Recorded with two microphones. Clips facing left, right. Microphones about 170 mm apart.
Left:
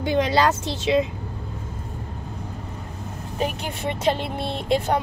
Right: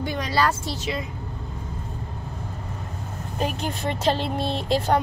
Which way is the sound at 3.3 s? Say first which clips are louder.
Even; 15° left (ahead or behind).